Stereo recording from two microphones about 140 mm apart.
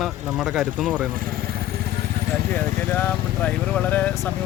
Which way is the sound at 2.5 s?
15° left (ahead or behind).